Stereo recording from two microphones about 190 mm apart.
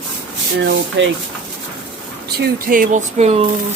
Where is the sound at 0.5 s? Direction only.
70° right (ahead or behind).